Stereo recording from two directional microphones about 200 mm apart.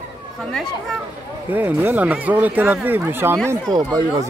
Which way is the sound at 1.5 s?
10° right (ahead or behind).